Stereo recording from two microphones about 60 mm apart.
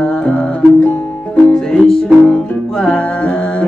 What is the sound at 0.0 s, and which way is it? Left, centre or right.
Music, centre.